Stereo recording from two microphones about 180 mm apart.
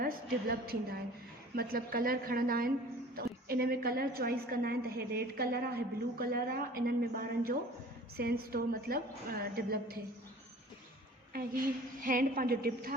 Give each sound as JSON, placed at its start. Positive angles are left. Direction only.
{"t": 0.0, "sound": "a woman's voice", "side_deg": -55}
{"t": 12.0, "sound": "a woman's voice", "side_deg": -50}